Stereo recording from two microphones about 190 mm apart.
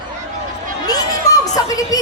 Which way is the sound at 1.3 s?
20° left (ahead or behind).